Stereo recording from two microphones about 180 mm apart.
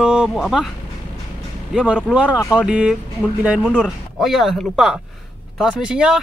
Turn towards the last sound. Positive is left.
turn(degrees=-5)  # may be behind; listen again after turning